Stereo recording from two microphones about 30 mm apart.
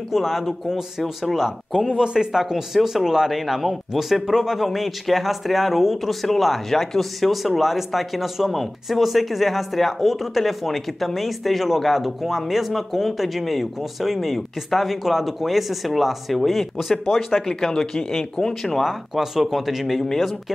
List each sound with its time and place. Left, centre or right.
0.1 s speech: centre
7.2 s speech: centre
17.5 s speech: centre
18.9 s speech: centre
19.9 s speech: centre
20.2 s speech: centre